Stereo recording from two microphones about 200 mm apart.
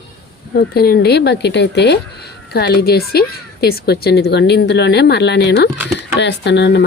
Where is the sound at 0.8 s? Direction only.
50° left (ahead or behind).